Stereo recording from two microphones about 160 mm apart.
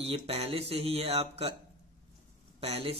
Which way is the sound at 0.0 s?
40° right (ahead or behind).